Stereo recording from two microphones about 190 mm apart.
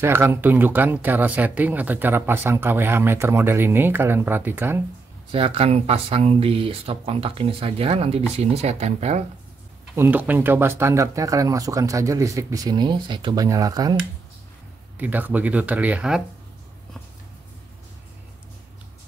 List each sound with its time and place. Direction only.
0.0 s speech: 10° right (ahead or behind)
5.3 s speech: 30° right (ahead or behind)
9.9 s speech: 10° right (ahead or behind)
15.0 s speech: 10° right (ahead or behind)